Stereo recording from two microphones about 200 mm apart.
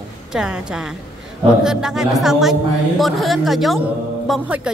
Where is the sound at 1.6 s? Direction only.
5° right (ahead or behind).